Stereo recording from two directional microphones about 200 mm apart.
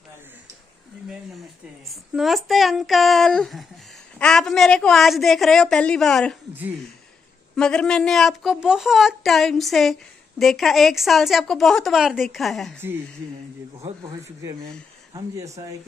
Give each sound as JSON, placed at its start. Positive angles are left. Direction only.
{"t": 1.9, "sound": "a woman's voice", "side_deg": 0}
{"t": 7.5, "sound": "a woman's voice", "side_deg": 5}
{"t": 13.7, "sound": "a sound", "side_deg": -30}
{"t": 15.1, "sound": "speech", "side_deg": -15}